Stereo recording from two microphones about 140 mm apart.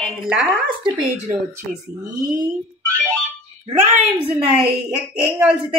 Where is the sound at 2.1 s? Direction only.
25° right (ahead or behind).